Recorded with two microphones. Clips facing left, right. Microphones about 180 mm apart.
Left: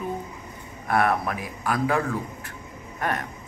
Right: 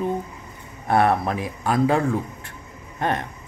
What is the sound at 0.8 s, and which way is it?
Speech, 30° right (ahead or behind).